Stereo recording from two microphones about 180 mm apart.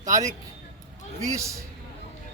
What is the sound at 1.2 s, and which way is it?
Speech, 15° right (ahead or behind).